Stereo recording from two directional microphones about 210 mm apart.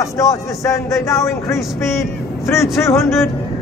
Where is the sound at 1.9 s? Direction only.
15° left (ahead or behind).